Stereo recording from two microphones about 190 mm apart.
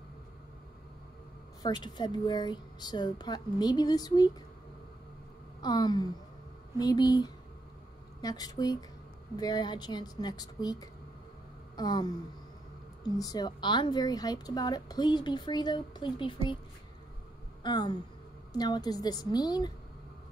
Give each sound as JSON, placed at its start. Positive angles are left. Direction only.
{"t": 1.6, "sound": "speech", "side_deg": 20}
{"t": 5.6, "sound": "speech", "side_deg": 20}
{"t": 13.2, "sound": "speech", "side_deg": 20}
{"t": 17.6, "sound": "speech", "side_deg": 25}